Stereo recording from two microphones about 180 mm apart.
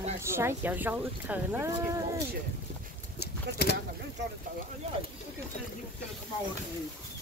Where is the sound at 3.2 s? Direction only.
70° left (ahead or behind).